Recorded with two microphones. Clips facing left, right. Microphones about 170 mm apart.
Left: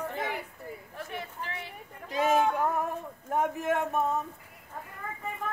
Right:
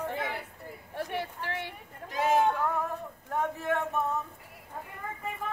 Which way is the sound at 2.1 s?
20° left (ahead or behind).